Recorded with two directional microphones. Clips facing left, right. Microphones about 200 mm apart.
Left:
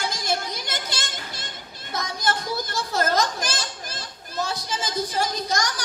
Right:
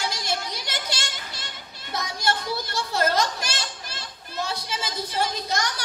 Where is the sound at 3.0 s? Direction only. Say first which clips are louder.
Left 1 dB; 45° left (ahead or behind).